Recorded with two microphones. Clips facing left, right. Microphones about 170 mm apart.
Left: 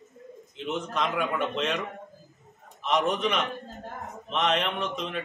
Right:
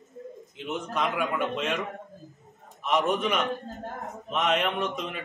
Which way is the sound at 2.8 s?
5° right (ahead or behind).